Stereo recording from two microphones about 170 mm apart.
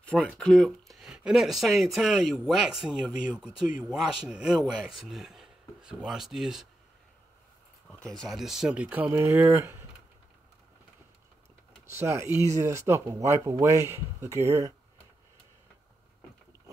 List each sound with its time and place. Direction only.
0.0 s speech: 5° left (ahead or behind)
8.1 s speech: centre (ahead or behind); by 9.8 s 15° right (ahead or behind)
12.0 s speech: 15° right (ahead or behind)